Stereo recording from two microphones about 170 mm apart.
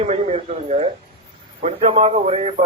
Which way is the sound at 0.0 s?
40° right (ahead or behind).